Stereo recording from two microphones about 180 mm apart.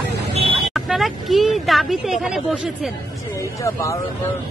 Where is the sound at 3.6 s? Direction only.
15° left (ahead or behind).